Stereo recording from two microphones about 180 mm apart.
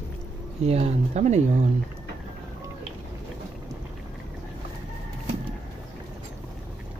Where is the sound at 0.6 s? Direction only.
35° right (ahead or behind).